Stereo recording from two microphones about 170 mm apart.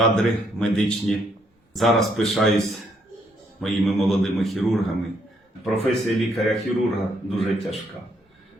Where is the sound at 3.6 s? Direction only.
Centre (ahead or behind).